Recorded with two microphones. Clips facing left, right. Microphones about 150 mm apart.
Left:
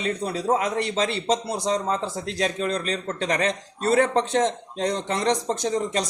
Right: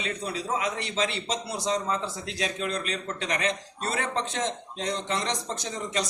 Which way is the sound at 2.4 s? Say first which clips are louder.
Left 5 dB; 35° left (ahead or behind).